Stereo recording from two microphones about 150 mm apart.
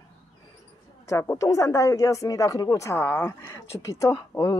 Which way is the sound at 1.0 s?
20° left (ahead or behind).